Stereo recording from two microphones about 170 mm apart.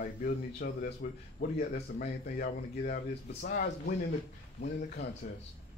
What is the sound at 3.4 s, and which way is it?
Speech, 65° left (ahead or behind).